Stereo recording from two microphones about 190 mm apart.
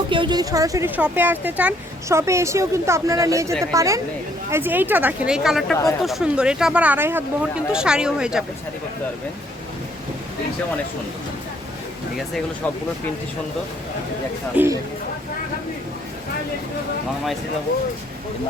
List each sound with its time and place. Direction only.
0.1 s speech: 25° right (ahead or behind); by 8.4 s 5° right (ahead or behind)
14.5 s speech: 10° right (ahead or behind)